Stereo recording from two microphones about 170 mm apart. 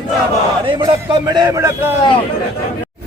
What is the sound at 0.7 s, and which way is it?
Speech, 30° right (ahead or behind).